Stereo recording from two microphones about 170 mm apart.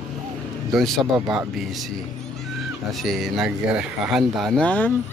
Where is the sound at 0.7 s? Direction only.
Centre (ahead or behind).